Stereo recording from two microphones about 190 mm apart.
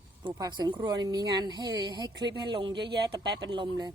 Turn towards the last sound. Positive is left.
turn(degrees=-25)  # may be behind; listen again after turning